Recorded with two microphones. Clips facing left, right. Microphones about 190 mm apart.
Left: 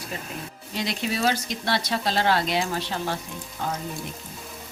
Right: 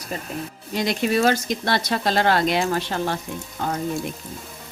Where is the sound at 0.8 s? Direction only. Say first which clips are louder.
Right 6 dB; 50° right (ahead or behind).